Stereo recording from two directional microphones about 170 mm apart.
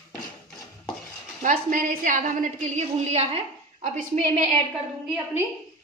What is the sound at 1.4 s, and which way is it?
A woman's voice, 50° right (ahead or behind).